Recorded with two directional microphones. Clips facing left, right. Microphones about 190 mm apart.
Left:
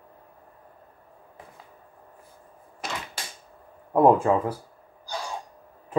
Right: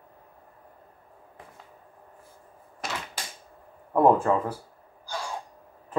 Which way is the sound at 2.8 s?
Centre (ahead or behind).